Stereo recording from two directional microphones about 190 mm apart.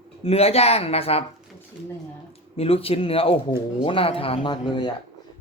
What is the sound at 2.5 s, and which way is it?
Speech, 30° left (ahead or behind).